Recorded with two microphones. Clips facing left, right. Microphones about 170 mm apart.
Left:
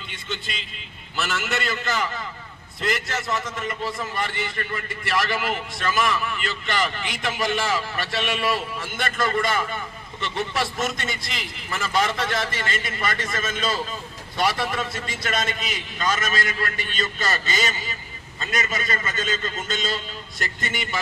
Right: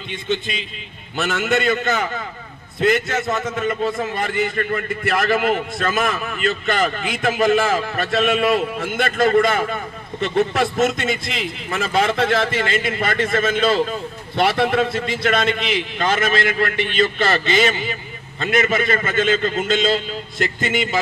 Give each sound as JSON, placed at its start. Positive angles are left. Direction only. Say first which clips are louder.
{"t": 1.1, "sound": "a man's voice", "louder": "right 7 dB", "side_deg": -55}